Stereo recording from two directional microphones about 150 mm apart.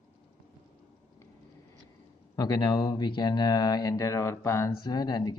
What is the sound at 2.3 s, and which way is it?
Speech, 25° left (ahead or behind).